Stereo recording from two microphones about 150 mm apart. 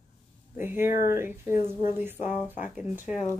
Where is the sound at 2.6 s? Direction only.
10° right (ahead or behind).